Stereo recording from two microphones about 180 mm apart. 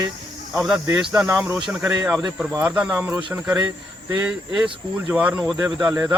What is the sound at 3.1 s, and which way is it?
Speech, 25° right (ahead or behind).